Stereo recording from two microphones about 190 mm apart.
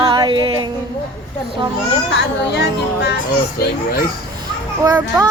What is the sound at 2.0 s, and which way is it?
A woman's voice, 65° left (ahead or behind).